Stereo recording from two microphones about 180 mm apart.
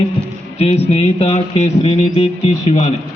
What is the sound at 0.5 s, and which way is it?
Speech, 35° left (ahead or behind).